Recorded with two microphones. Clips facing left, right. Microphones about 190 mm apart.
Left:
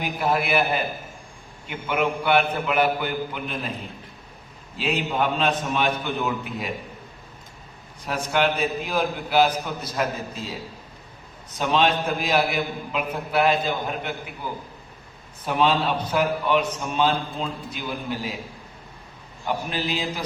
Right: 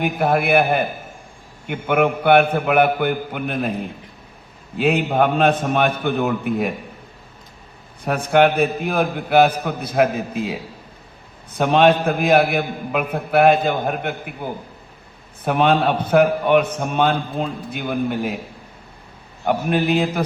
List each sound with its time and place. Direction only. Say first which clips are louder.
0.0 s a man's voice: right 5 dB; 55° right (ahead or behind)
8.0 s a man's voice: right 7 dB; 60° right (ahead or behind)
19.5 s a man's voice: right 8 dB; 60° right (ahead or behind)